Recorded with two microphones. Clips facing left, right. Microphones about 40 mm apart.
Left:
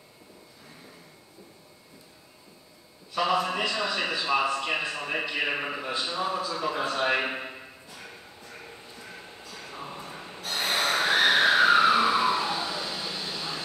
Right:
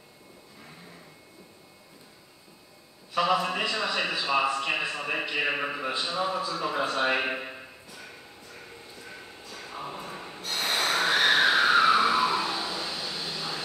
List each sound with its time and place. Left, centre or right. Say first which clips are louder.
3.2 s a man's voice: even; centre
5.9 s a man's voice: even; centre
10.1 s snort: even; centre
10.7 s snort: left 1 dB; centre
11.1 s a sound: left 2 dB; centre
12.3 s vehicle: left 1 dB; centre